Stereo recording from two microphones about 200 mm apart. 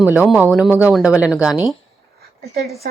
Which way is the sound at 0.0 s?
5° right (ahead or behind).